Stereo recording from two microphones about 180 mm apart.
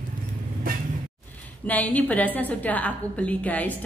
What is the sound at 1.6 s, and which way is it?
A woman's voice, 10° left (ahead or behind).